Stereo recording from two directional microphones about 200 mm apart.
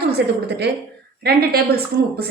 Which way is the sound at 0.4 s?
55° right (ahead or behind).